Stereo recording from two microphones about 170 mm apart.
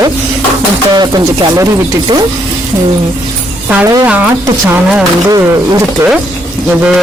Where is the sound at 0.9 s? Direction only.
25° right (ahead or behind).